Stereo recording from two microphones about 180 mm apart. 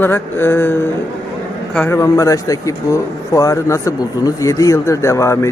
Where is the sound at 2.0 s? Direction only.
20° left (ahead or behind).